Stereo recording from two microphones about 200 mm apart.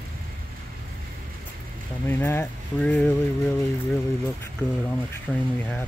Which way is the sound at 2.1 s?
10° left (ahead or behind).